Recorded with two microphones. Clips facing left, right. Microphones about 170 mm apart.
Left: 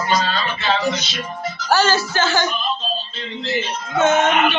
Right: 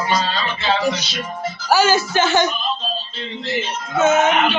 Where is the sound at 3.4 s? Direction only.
5° right (ahead or behind).